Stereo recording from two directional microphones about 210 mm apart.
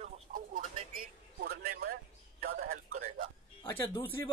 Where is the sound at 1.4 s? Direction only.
45° right (ahead or behind).